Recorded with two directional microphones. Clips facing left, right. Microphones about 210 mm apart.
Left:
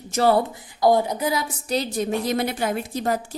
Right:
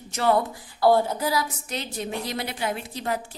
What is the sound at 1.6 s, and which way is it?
A woman's voice, 35° left (ahead or behind).